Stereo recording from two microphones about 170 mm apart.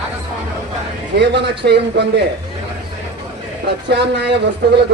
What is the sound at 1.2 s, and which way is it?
Speech, 85° right.